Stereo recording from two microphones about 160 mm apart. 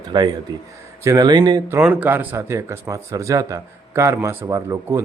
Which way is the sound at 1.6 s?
10° right (ahead or behind).